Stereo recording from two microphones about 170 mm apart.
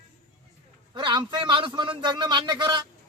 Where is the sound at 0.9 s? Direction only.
25° right (ahead or behind).